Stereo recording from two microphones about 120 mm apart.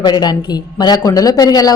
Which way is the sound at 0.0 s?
35° left (ahead or behind).